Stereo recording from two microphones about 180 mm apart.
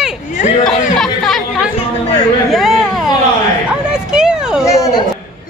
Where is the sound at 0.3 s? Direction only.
40° left (ahead or behind).